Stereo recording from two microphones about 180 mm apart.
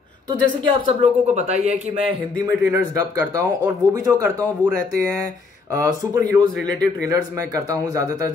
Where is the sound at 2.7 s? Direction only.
15° right (ahead or behind).